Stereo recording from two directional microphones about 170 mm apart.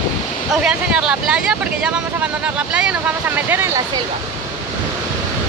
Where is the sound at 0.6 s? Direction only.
5° right (ahead or behind).